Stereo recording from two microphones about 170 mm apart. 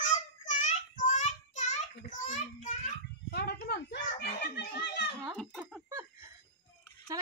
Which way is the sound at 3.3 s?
70° left (ahead or behind).